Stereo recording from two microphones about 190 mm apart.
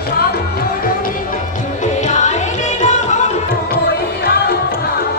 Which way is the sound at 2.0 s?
40° left (ahead or behind).